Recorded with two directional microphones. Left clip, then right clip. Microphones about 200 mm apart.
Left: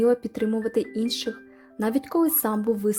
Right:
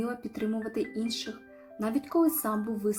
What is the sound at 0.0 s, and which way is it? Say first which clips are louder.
Speech: left 12 dB; 40° left (ahead or behind).